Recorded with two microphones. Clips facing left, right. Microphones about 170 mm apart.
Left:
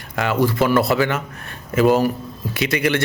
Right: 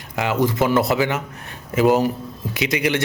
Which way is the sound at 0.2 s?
20° right (ahead or behind).